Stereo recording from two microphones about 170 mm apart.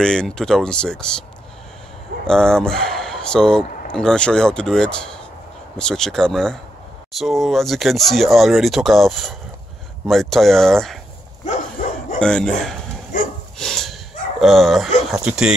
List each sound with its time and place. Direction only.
0.0 s speech: 5° left (ahead or behind)
2.2 s speech: 5° left (ahead or behind)
11.8 s dog: 50° left (ahead or behind)
12.2 s speech: 5° left (ahead or behind)
13.6 s dog: centre (ahead or behind)
14.4 s speech: centre (ahead or behind)